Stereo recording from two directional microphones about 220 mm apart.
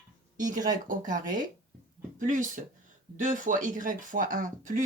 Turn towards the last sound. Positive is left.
turn(degrees=-35)  # may be behind; listen again after turning